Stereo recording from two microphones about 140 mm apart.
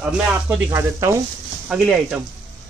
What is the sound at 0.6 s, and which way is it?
Speech, 20° right (ahead or behind).